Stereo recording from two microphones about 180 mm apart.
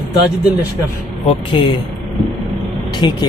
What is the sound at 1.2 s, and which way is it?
Speech, 30° left (ahead or behind).